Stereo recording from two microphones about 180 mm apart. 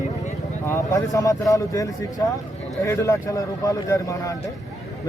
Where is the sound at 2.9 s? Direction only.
15° left (ahead or behind).